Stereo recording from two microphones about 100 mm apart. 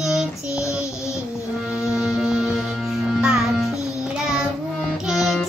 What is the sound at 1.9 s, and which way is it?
Music, 5° right (ahead or behind).